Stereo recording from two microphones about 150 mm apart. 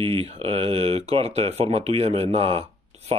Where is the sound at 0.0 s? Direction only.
40° right (ahead or behind).